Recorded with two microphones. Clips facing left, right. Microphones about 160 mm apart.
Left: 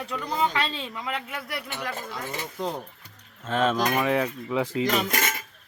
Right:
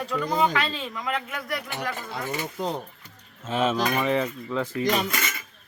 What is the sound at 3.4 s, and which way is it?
Cutlery, 5° right (ahead or behind).